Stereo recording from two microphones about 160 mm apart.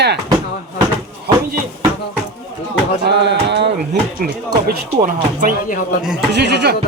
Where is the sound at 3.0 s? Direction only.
90° right.